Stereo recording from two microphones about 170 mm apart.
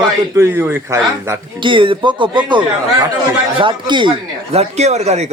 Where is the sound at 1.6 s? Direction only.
30° right (ahead or behind).